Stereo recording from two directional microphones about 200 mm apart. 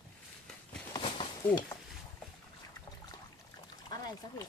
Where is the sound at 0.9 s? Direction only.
25° left (ahead or behind).